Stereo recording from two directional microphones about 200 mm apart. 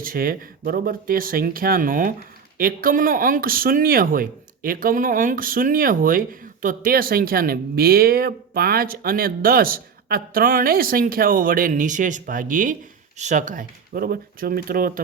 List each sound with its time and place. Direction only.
0.0 s speech: 45° right (ahead or behind)